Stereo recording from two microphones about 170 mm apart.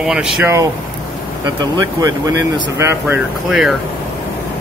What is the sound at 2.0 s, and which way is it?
Speech, 20° right (ahead or behind).